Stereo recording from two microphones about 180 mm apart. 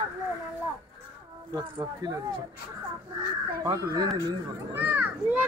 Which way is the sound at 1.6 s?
25° right (ahead or behind).